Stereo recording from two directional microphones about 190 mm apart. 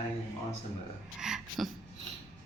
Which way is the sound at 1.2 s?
5° right (ahead or behind).